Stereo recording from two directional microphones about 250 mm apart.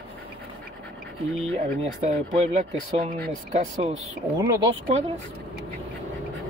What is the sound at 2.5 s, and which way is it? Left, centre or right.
Speech, right.